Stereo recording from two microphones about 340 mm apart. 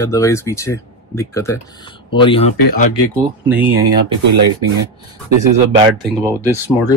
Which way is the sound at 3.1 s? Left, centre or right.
Centre.